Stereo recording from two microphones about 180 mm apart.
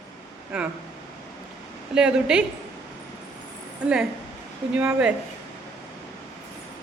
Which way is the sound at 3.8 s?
5° right (ahead or behind).